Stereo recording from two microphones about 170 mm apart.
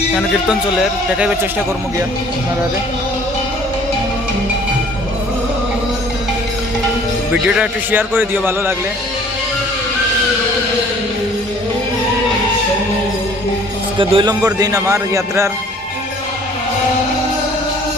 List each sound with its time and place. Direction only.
0.2 s a man's voice: 5° right (ahead or behind)
7.4 s a man's voice: 5° right (ahead or behind)
14.0 s a man's voice: 30° right (ahead or behind)